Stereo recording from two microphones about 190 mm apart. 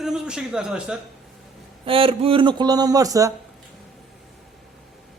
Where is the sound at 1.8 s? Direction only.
30° right (ahead or behind).